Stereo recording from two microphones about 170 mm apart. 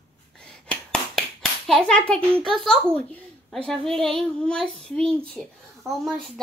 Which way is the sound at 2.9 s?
10° left (ahead or behind).